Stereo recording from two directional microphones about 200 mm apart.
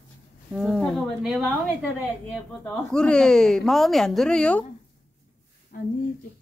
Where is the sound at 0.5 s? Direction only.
Centre (ahead or behind).